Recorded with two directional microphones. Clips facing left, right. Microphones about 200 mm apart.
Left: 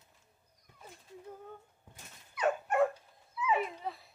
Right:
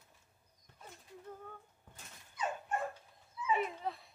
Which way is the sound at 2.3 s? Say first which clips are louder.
Left 7 dB; 70° left (ahead or behind).